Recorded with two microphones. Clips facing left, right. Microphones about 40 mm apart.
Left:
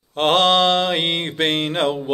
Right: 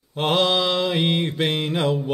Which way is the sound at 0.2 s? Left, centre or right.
Left.